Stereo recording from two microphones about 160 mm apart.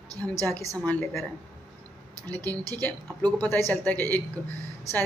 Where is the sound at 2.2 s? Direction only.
25° right (ahead or behind).